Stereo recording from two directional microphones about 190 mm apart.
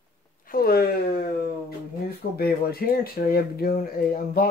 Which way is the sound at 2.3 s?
55° left (ahead or behind).